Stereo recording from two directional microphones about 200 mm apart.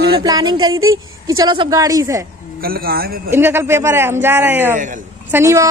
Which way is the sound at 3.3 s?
10° right (ahead or behind).